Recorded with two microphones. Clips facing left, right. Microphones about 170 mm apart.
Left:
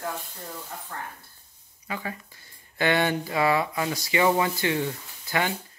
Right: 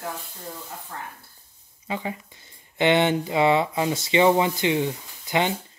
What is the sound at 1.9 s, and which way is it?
Speech, 20° right (ahead or behind).